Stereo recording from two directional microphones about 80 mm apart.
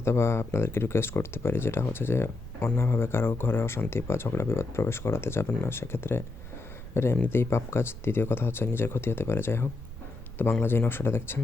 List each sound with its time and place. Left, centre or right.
0.0 s speech: left